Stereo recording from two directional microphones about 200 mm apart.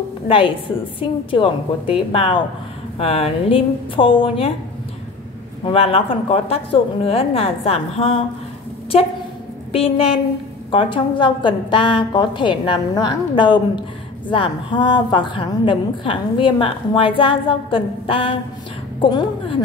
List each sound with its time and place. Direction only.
0.3 s a woman's voice: 25° left (ahead or behind)
5.7 s a woman's voice: 30° left (ahead or behind)
9.7 s a woman's voice: 30° left (ahead or behind)